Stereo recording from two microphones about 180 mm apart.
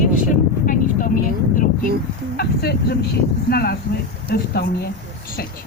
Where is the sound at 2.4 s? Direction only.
60° left (ahead or behind).